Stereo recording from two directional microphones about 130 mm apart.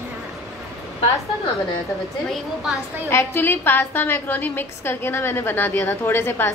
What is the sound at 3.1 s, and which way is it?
A woman's voice, 20° left (ahead or behind).